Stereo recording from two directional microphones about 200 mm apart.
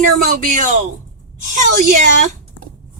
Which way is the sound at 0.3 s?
40° right (ahead or behind).